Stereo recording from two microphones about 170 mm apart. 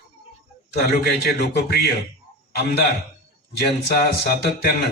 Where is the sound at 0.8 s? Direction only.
65° left (ahead or behind).